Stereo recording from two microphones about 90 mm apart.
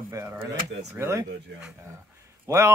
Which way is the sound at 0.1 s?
25° right (ahead or behind).